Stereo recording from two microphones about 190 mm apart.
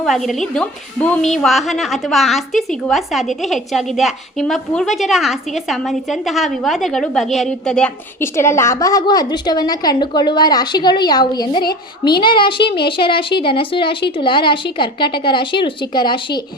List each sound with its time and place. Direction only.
0.0 s a woman's voice: centre (ahead or behind); by 11.6 s 20° left (ahead or behind)
11.6 s a woman's voice: 55° left (ahead or behind)
12.2 s a woman's voice: 25° left (ahead or behind)